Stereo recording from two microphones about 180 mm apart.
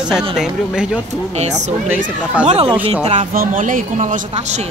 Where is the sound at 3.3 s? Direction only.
50° right (ahead or behind).